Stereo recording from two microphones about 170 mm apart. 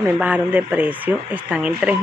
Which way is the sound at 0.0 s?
10° right (ahead or behind).